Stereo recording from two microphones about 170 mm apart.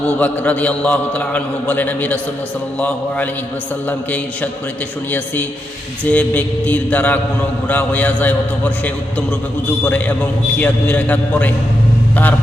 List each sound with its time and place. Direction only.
0.2 s a man's voice: 10° left (ahead or behind)